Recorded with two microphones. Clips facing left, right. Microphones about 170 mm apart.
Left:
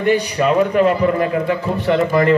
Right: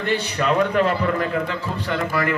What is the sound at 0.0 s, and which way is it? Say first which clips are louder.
A man's voice: left 7 dB; 15° left (ahead or behind).